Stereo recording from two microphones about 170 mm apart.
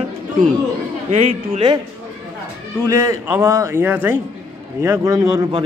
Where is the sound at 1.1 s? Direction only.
45° right (ahead or behind).